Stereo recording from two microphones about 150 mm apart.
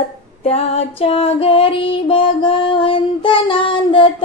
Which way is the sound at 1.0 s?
40° left (ahead or behind).